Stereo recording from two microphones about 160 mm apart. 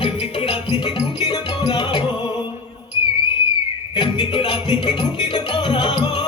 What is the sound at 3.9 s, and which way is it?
Music, 30° left (ahead or behind).